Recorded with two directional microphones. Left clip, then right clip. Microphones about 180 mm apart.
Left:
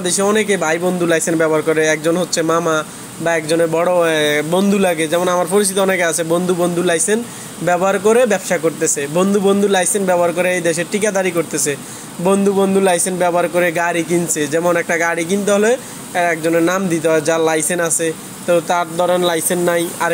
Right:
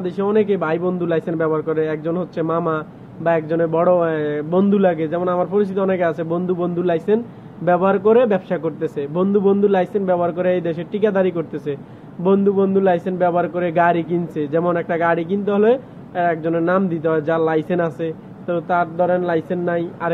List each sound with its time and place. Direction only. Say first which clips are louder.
0.0 s speech: left 3 dB; 10° left (ahead or behind)